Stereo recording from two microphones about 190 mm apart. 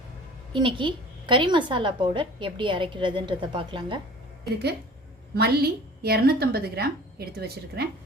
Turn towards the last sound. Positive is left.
turn(degrees=-55)  # may be behind; listen again after turning